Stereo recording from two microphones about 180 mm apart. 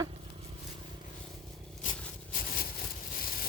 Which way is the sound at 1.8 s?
45° left (ahead or behind).